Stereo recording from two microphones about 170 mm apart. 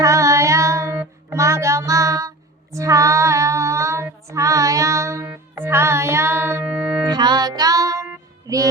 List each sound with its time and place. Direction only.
0.0 s child singing: 15° right (ahead or behind)
8.5 s music: 20° right (ahead or behind)